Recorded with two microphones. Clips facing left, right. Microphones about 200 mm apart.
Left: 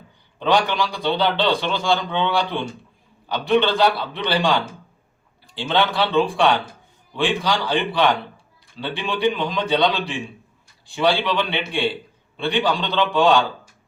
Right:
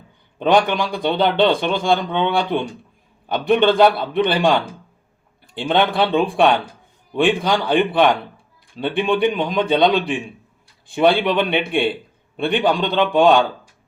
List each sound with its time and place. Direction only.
0.3 s a man's voice: 50° right (ahead or behind)